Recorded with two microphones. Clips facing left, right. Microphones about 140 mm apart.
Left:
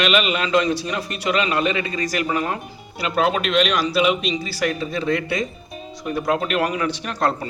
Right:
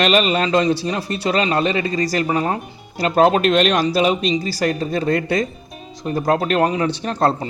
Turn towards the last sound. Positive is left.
turn(degrees=-30)  # may be behind; listen again after turning